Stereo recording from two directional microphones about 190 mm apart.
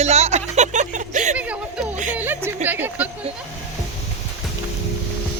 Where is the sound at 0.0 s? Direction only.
35° right (ahead or behind).